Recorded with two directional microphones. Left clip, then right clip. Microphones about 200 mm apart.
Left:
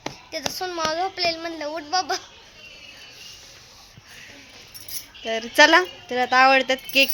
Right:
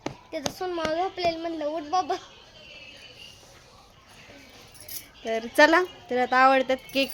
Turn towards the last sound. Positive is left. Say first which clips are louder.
# left 6 dB
turn(degrees=0)  # may be behind; listen again after turning